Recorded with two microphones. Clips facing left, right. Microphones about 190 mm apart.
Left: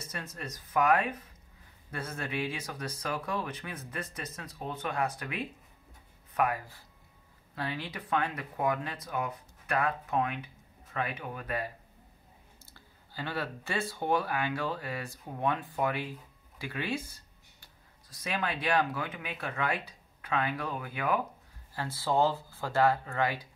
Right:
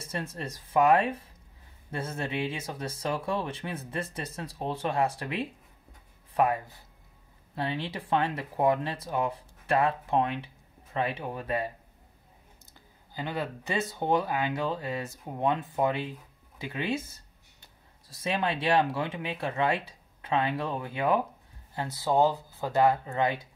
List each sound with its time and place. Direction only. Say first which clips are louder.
0.0 s speech: right 5 dB; 30° right (ahead or behind)
12.7 s speech: right 3 dB; 20° right (ahead or behind)